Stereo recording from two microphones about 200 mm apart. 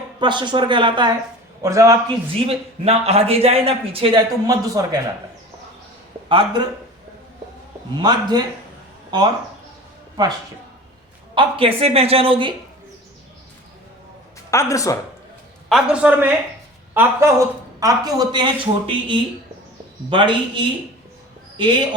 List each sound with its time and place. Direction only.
0.2 s a woman's voice: 25° right (ahead or behind)
2.8 s speech: 30° right (ahead or behind)
6.2 s speech: 25° right (ahead or behind)
7.9 s speech: 20° right (ahead or behind)
11.3 s speech: 25° right (ahead or behind)
14.5 s speech: 15° left (ahead or behind)
15.7 s a woman's voice: 5° right (ahead or behind); by 20.7 s 25° right (ahead or behind)